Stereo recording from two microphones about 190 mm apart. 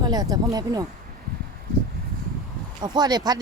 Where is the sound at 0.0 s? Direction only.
20° right (ahead or behind).